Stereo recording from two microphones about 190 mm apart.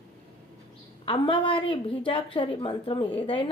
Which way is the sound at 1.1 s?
25° left (ahead or behind).